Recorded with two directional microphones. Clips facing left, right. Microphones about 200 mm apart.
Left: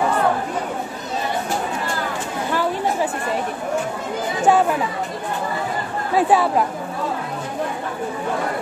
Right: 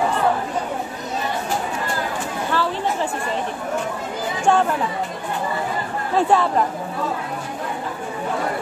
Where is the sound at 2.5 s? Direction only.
15° left (ahead or behind).